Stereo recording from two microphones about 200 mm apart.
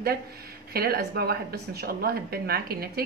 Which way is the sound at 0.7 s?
50° right (ahead or behind).